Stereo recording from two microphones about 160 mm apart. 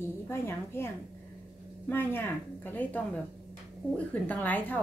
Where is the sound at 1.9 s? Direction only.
15° left (ahead or behind).